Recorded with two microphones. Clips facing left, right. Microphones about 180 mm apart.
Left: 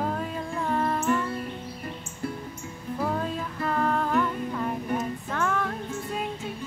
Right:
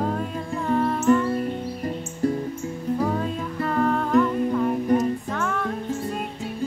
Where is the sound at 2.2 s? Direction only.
40° right (ahead or behind).